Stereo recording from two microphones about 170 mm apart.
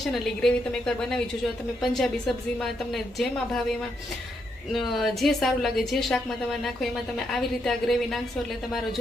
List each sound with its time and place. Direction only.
0.0 s a woman's voice: 5° left (ahead or behind)
4.7 s a woman's voice: centre (ahead or behind)
7.6 s a woman's voice: centre (ahead or behind)